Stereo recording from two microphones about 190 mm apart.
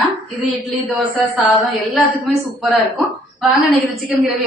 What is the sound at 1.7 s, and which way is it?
Speech, centre (ahead or behind).